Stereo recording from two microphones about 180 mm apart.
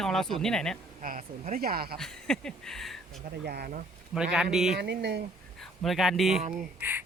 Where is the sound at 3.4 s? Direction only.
60° right (ahead or behind).